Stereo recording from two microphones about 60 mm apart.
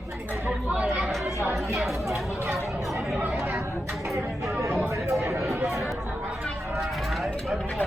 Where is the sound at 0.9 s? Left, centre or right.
Centre.